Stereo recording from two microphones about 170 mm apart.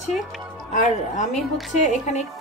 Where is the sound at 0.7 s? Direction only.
45° left (ahead or behind).